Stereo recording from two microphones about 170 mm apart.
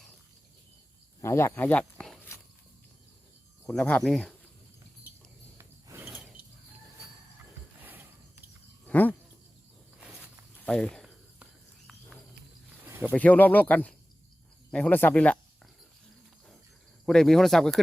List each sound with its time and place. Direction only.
1.2 s speech: 15° left (ahead or behind)
3.7 s speech: 5° left (ahead or behind)
5.5 s a sound: 15° right (ahead or behind)
6.1 s pulleys: 5° right (ahead or behind)
7.8 s ratchet: 10° right (ahead or behind)
8.9 s a sound: 10° left (ahead or behind)
10.0 s walk: 5° right (ahead or behind)
10.7 s cricket: 5° left (ahead or behind)
11.9 s a sound: centre (ahead or behind)
12.8 s a sound: 10° right (ahead or behind)
13.1 s speech: 10° left (ahead or behind)
17.1 s speech: 5° left (ahead or behind)